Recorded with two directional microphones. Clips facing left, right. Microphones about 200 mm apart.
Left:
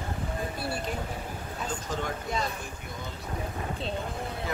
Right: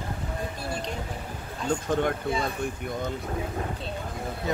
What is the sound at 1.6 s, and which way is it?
Speech, 55° right (ahead or behind).